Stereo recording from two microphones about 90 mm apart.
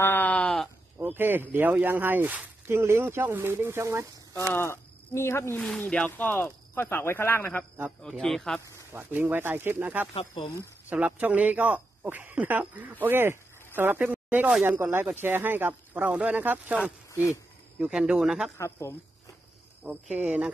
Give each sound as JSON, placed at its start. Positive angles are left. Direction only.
{"t": 0.0, "sound": "sheep", "side_deg": 20}
{"t": 0.9, "sound": "speech", "side_deg": -20}
{"t": 4.6, "sound": "speech", "side_deg": 30}
{"t": 5.9, "sound": "speech", "side_deg": 15}
{"t": 8.2, "sound": "speech", "side_deg": 5}
{"t": 8.9, "sound": "speech", "side_deg": -20}
{"t": 10.1, "sound": "speech", "side_deg": 75}
{"t": 10.9, "sound": "a woman's voice", "side_deg": -15}
{"t": 17.1, "sound": "speech", "side_deg": 35}
{"t": 17.7, "sound": "speech", "side_deg": -10}
{"t": 18.6, "sound": "a woman's voice", "side_deg": 30}
{"t": 19.8, "sound": "speech", "side_deg": -15}